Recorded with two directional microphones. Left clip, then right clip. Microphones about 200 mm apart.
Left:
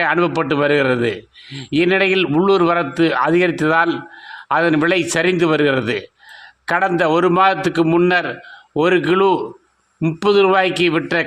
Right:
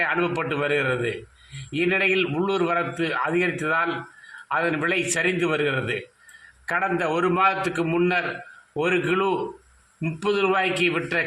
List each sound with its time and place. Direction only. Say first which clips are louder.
0.0 s a man's voice: left 7 dB; 45° left (ahead or behind)